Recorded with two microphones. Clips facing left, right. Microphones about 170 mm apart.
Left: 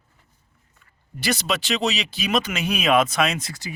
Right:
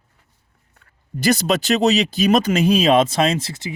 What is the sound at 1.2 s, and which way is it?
Speech, 40° right (ahead or behind).